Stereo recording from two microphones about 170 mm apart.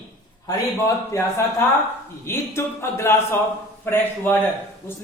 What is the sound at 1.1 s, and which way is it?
Speech, 15° left (ahead or behind).